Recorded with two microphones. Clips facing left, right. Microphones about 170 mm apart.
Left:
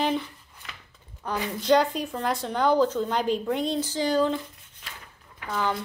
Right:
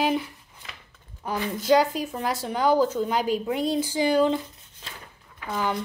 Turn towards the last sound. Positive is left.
turn(degrees=-20)  # may be behind; listen again after turning